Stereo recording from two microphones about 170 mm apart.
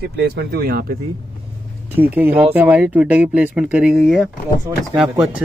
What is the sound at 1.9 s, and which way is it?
Speech, 10° right (ahead or behind).